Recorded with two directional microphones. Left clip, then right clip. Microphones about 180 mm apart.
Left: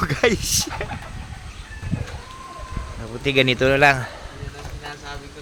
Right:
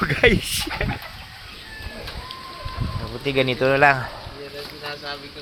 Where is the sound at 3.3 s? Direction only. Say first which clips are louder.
Left 2 dB; 30° left (ahead or behind).